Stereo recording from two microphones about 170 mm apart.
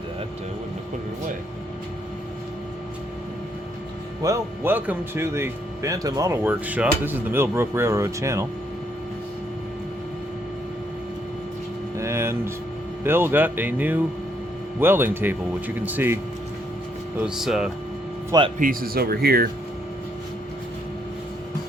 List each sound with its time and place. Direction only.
4.2 s speech: 15° right (ahead or behind)
11.9 s a sound: 15° right (ahead or behind)
13.1 s speech: 15° right (ahead or behind)
18.3 s speech: 25° right (ahead or behind)
18.6 s speech: 55° right (ahead or behind)